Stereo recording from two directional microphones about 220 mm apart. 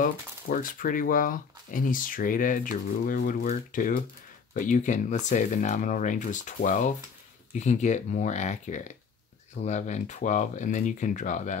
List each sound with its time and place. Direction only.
0.0 s speech: 40° left (ahead or behind)